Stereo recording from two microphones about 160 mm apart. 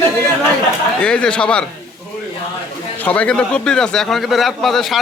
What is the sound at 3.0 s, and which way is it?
A man's voice, 10° left (ahead or behind).